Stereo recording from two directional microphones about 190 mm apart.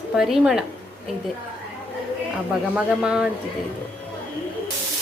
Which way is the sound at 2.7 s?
5° right (ahead or behind).